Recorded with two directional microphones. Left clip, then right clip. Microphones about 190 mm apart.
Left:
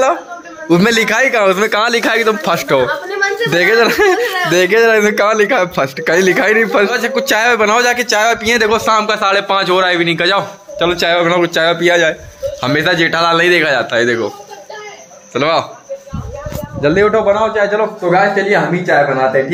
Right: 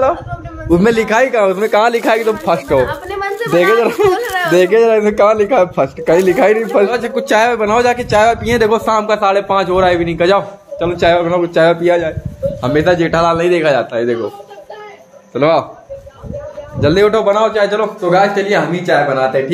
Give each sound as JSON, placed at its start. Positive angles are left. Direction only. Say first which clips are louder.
{"t": 0.7, "sound": "a man's voice", "louder": "even", "side_deg": -10}
{"t": 7.0, "sound": "a man's voice", "louder": "right 1 dB", "side_deg": -10}
{"t": 15.3, "sound": "speech", "louder": "right 2 dB", "side_deg": -10}
{"t": 16.8, "sound": "a man's voice", "louder": "even", "side_deg": -20}
{"t": 17.6, "sound": "speech", "louder": "even", "side_deg": -10}